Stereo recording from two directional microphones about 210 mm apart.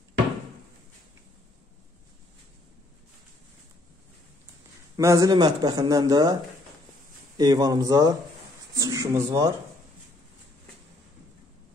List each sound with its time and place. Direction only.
4.9 s speech: 15° right (ahead or behind)